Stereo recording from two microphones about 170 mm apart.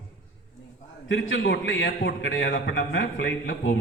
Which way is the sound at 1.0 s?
90° left.